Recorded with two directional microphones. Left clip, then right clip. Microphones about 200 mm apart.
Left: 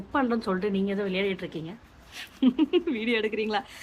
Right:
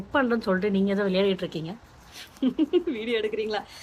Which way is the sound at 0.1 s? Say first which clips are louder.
Right 3 dB; 5° right (ahead or behind).